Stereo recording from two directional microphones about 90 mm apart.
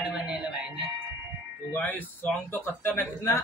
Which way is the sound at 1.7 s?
20° left (ahead or behind).